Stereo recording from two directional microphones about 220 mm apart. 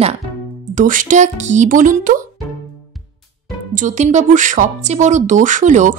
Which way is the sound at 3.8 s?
35° right (ahead or behind).